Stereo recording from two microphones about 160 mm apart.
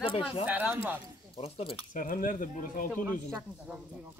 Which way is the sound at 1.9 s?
60° left (ahead or behind).